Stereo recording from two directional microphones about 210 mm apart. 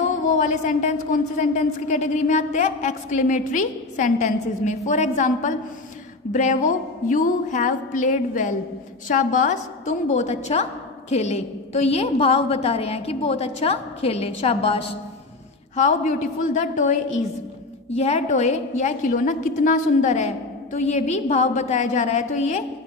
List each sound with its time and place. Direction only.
0.3 s a woman's voice: 40° left (ahead or behind)
17.9 s speech: 30° left (ahead or behind)